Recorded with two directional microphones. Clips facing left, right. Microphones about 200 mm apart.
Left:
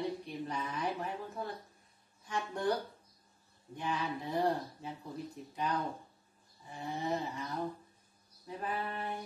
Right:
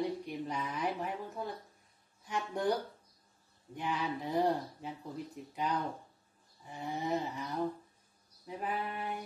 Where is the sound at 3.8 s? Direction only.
15° right (ahead or behind).